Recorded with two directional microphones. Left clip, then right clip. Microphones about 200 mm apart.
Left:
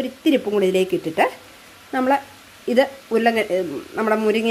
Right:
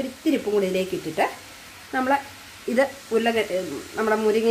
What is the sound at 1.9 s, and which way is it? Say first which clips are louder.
Speech: left 3 dB; 35° left (ahead or behind).